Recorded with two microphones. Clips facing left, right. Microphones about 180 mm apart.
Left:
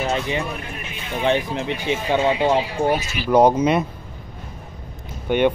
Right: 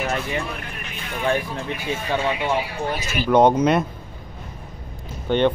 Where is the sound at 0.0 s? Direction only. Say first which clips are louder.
Left 2 dB; 20° left (ahead or behind).